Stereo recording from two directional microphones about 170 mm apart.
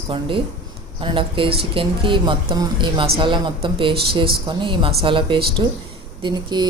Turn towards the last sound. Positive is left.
turn(degrees=-25)  # may be behind; listen again after turning